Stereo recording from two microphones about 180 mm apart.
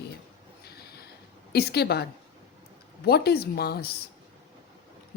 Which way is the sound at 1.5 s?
65° left (ahead or behind).